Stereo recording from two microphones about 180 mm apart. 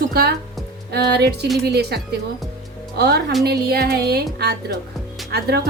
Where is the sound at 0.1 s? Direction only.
60° right (ahead or behind).